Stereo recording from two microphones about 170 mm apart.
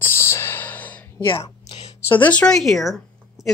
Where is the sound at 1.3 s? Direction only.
35° left (ahead or behind).